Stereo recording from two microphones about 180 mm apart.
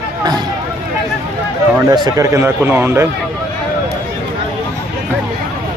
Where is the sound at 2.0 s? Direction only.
15° right (ahead or behind).